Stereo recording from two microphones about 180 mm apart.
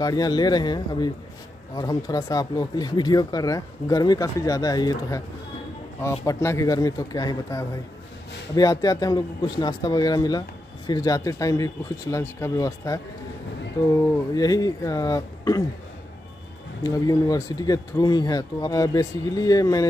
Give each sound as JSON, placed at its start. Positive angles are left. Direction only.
{"t": 0.0, "sound": "speech", "side_deg": 20}
{"t": 14.3, "sound": "speech", "side_deg": 20}
{"t": 16.8, "sound": "speech", "side_deg": 20}